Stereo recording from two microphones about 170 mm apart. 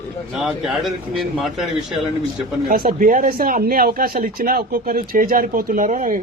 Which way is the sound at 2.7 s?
55° right (ahead or behind).